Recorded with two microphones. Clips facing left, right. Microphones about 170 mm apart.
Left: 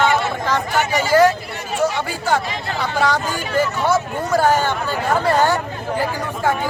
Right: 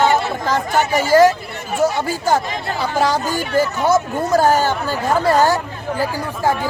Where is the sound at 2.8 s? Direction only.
35° right (ahead or behind).